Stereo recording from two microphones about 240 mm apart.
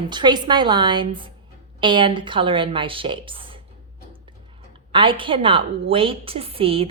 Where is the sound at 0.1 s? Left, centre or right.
Centre.